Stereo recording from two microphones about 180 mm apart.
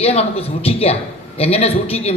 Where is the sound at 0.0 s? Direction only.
35° left (ahead or behind).